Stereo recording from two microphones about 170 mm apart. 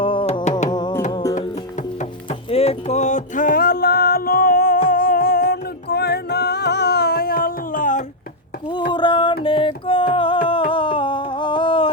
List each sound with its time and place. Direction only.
0.0 s music: 30° left (ahead or behind)
2.5 s music: 35° left (ahead or behind)
8.9 s music: 30° left (ahead or behind)
10.4 s a sound: 30° left (ahead or behind)